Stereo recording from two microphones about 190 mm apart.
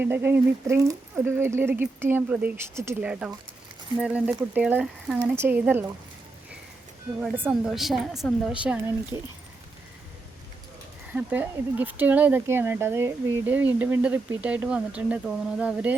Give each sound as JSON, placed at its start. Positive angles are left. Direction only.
{"t": 0.0, "sound": "a woman's voice", "side_deg": -10}
{"t": 7.2, "sound": "a woman's voice", "side_deg": -5}
{"t": 9.1, "sound": "speech", "side_deg": -15}
{"t": 11.1, "sound": "speech", "side_deg": -5}